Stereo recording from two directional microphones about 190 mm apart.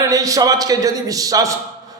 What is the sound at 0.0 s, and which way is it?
A man's voice, 15° right (ahead or behind).